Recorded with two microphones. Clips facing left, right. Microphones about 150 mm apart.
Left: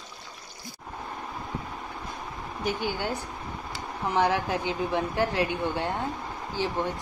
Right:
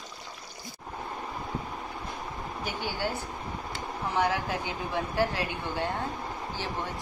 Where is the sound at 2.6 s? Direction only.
20° left (ahead or behind).